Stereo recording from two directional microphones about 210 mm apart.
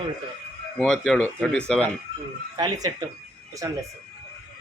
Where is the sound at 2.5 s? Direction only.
20° right (ahead or behind).